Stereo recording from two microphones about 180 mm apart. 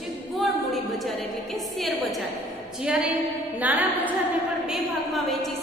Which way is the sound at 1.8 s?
Centre (ahead or behind).